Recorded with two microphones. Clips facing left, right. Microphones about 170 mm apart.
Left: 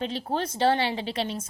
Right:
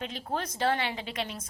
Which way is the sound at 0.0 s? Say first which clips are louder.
Left 5 dB; 30° left (ahead or behind).